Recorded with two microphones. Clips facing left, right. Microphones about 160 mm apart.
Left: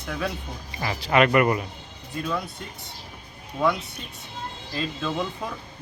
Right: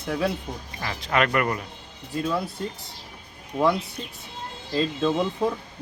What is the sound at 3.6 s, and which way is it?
Speech, 30° right (ahead or behind).